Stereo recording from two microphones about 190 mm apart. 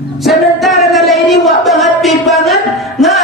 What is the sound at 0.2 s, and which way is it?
Music, centre (ahead or behind).